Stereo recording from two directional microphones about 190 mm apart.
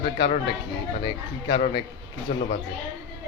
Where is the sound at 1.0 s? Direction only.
25° left (ahead or behind).